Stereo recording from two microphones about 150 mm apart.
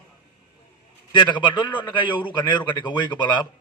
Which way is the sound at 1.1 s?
30° left (ahead or behind).